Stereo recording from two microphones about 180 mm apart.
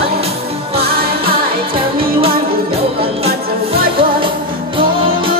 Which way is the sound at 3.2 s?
30° right (ahead or behind).